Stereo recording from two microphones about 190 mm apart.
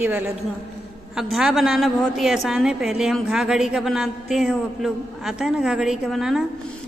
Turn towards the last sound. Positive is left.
turn(degrees=0)  # may be behind; listen again after turning